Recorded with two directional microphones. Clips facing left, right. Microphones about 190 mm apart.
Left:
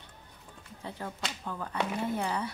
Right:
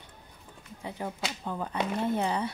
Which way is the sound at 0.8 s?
15° right (ahead or behind).